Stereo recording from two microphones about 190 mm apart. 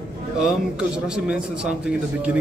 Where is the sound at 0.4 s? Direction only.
5° right (ahead or behind).